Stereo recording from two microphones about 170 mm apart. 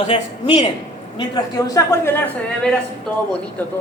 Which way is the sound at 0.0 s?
30° left (ahead or behind).